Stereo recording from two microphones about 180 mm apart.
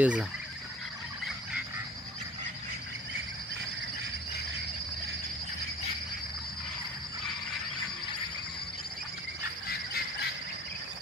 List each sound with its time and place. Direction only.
0.0 s speech: 5° right (ahead or behind)
9.7 s bird: 60° left (ahead or behind)